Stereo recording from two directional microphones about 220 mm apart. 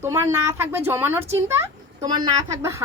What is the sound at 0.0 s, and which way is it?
A woman's voice, 10° right (ahead or behind).